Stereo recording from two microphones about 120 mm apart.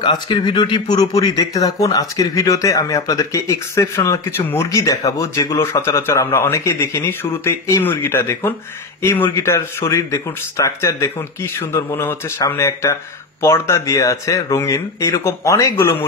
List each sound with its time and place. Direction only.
0.0 s speech: 40° left (ahead or behind); by 16.0 s 25° left (ahead or behind)